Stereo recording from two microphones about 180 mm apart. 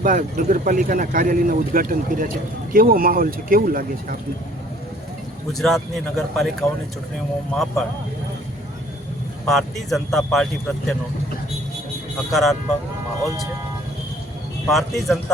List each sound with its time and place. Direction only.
0.0 s speech: 45° right (ahead or behind)
5.5 s speech: centre (ahead or behind)
9.5 s speech: centre (ahead or behind)
12.3 s speech: centre (ahead or behind)
14.7 s speech: centre (ahead or behind)